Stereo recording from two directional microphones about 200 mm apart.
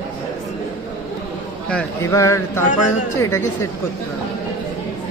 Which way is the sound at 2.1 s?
15° left (ahead or behind).